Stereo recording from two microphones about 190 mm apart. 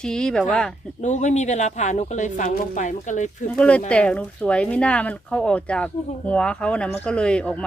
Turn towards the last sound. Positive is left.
turn(degrees=5)  # may be behind; listen again after turning